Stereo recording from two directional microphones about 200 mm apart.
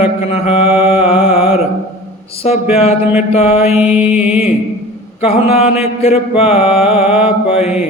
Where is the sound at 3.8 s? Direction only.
5° right (ahead or behind).